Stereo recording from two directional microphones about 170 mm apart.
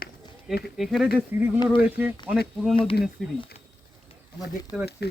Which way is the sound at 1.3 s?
15° right (ahead or behind).